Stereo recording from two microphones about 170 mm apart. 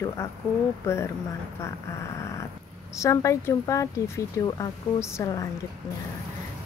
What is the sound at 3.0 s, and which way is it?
Speech, 20° left (ahead or behind).